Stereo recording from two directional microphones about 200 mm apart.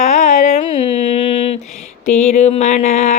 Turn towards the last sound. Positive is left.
turn(degrees=35)  # may be behind; listen again after turning